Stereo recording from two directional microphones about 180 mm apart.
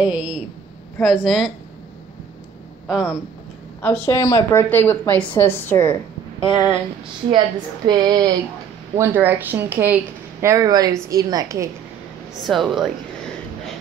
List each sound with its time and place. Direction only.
0.0 s speech: 5° right (ahead or behind)
2.9 s speech: 5° right (ahead or behind)
4.0 s a woman's voice: 15° left (ahead or behind)
6.5 s a woman's voice: 15° right (ahead or behind)
7.2 s a woman's voice: 25° right (ahead or behind)
8.9 s a woman's voice: 10° right (ahead or behind)
12.4 s speech: centre (ahead or behind)